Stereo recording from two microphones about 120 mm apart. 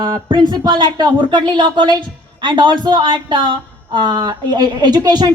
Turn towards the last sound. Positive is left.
turn(degrees=-35)  # may be behind; listen again after turning